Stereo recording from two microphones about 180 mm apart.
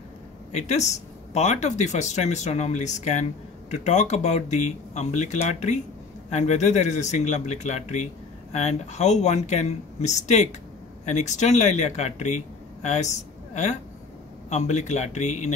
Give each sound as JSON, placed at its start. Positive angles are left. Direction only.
{"t": 0.5, "sound": "speech", "side_deg": 40}